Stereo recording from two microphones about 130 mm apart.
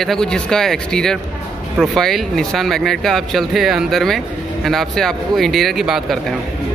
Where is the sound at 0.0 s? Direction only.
5° left (ahead or behind).